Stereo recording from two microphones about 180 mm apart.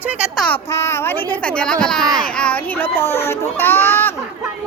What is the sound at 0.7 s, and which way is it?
Speech, 15° left (ahead or behind).